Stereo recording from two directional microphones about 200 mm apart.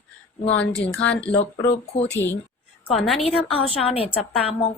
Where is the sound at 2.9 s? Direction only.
Centre (ahead or behind).